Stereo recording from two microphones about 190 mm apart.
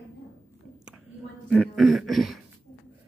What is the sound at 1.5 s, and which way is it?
Speech, 5° left (ahead or behind).